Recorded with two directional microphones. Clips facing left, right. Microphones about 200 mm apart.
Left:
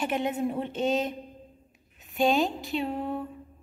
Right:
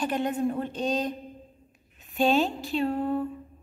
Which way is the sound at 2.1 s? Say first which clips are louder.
Right 1 dB; 15° left (ahead or behind).